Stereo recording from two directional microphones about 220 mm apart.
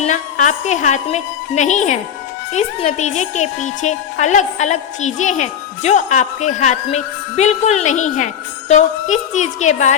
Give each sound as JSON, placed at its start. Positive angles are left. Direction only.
{"t": 0.0, "sound": "speech", "side_deg": 35}